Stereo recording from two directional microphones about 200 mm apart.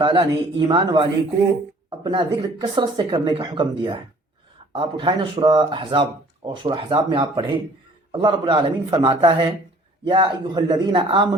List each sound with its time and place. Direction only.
0.0 s speech: 25° right (ahead or behind)
2.0 s speech: 25° right (ahead or behind)